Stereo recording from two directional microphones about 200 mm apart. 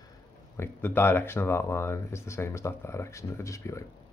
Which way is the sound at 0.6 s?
10° left (ahead or behind).